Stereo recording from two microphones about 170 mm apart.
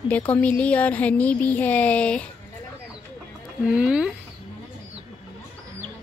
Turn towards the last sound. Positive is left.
turn(degrees=-5)  # may be behind; listen again after turning